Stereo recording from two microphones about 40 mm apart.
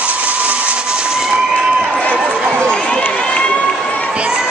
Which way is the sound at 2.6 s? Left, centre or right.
Left.